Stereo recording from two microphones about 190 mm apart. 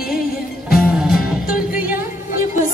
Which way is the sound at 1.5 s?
50° left (ahead or behind).